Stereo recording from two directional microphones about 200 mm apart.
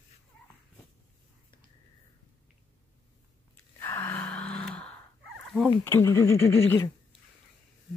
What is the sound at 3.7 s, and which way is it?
Gasp, 10° left (ahead or behind).